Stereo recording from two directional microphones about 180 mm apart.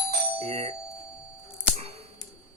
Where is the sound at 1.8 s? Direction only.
35° right (ahead or behind).